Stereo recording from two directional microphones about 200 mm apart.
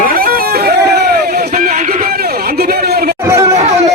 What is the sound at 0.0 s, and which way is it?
Music, 45° right (ahead or behind).